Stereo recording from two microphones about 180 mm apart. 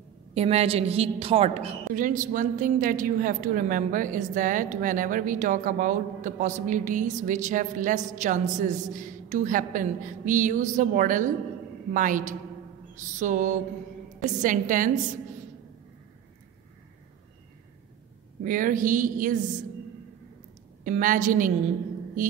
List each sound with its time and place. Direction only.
0.3 s a woman's voice: 35° right (ahead or behind)
18.4 s a woman's voice: 50° right (ahead or behind)
20.8 s a woman's voice: 45° right (ahead or behind)